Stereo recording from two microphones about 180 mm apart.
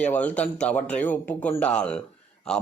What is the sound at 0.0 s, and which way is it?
A man's voice, 10° left (ahead or behind).